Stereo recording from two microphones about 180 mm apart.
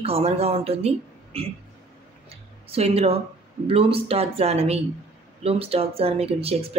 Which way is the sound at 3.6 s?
30° right (ahead or behind).